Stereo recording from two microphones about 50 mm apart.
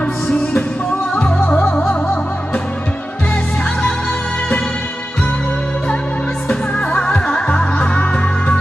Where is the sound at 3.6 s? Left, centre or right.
Left.